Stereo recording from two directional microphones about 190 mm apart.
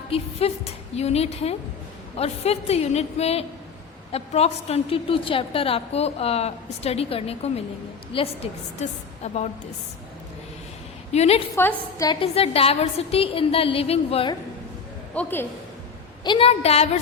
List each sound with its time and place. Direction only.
0.1 s a woman's voice: 30° left (ahead or behind)
11.1 s a woman's voice: 35° left (ahead or behind)
11.5 s a woman's voice: 15° left (ahead or behind)
12.2 s a woman's voice: 30° left (ahead or behind)
15.1 s a woman's voice: 10° left (ahead or behind)
16.2 s a woman's voice: 25° left (ahead or behind)